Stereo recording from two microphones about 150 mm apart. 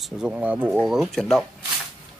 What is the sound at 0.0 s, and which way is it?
Speech, 5° right (ahead or behind).